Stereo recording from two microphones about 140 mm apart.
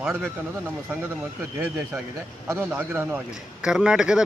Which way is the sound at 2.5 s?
15° right (ahead or behind).